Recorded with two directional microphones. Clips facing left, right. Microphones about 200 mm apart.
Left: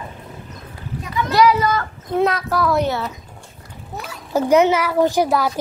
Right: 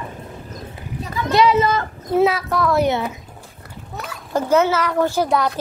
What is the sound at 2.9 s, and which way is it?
Speech, 15° right (ahead or behind).